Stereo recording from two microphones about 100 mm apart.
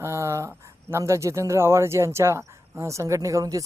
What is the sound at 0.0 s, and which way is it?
Speech, 30° right (ahead or behind).